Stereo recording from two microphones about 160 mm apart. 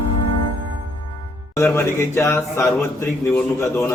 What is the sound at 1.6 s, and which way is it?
A man's voice, 15° left (ahead or behind).